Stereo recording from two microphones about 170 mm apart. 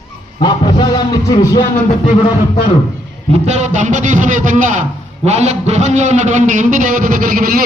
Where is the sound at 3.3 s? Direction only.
40° right (ahead or behind).